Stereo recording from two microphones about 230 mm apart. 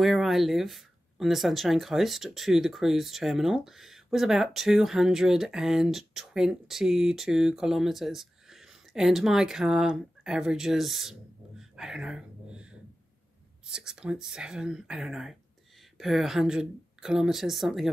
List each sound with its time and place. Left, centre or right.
0.0 s a woman's voice: centre